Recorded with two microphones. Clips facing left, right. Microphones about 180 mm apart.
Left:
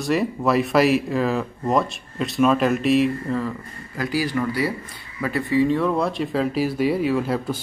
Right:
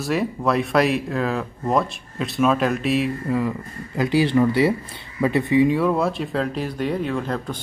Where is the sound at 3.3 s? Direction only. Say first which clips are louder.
Right 3 dB; 20° right (ahead or behind).